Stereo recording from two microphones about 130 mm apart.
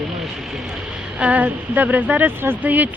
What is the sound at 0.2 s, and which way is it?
Speech, 5° right (ahead or behind).